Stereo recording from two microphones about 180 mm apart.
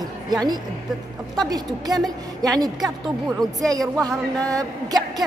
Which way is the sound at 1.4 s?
20° right (ahead or behind).